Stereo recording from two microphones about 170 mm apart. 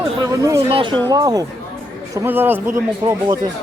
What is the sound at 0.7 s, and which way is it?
Speech, 30° right (ahead or behind).